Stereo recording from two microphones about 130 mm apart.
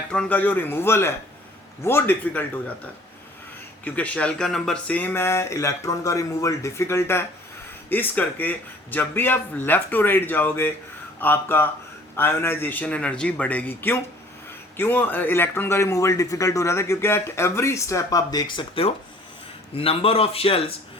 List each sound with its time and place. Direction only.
0.1 s a man's voice: 10° left (ahead or behind)
3.8 s a man's voice: 10° left (ahead or behind); by 20.7 s 50° left (ahead or behind)